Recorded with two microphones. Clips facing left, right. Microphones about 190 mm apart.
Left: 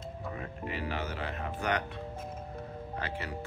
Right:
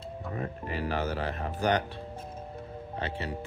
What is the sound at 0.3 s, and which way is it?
Speech, 40° right (ahead or behind).